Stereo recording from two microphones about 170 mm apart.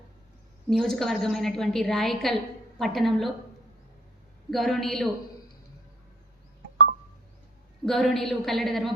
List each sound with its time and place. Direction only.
0.7 s a woman's voice: centre (ahead or behind)
4.5 s a woman's voice: centre (ahead or behind)
7.9 s a woman's voice: centre (ahead or behind)